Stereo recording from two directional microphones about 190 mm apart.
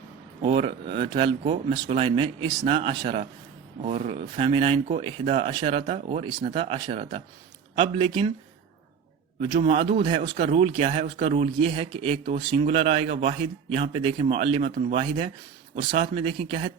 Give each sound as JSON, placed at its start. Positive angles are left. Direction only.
{"t": 0.4, "sound": "speech", "side_deg": -30}
{"t": 9.4, "sound": "speech", "side_deg": -30}